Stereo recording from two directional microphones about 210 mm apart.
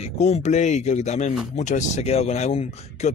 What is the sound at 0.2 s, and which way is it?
Speech, 35° left (ahead or behind).